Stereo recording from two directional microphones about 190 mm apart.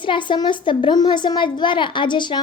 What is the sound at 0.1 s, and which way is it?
A child's voice, 25° left (ahead or behind).